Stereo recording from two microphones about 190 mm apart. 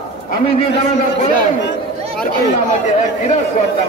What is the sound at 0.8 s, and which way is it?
Speech, 40° left (ahead or behind).